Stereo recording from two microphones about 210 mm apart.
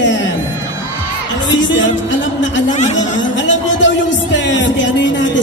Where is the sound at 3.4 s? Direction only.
60° left (ahead or behind).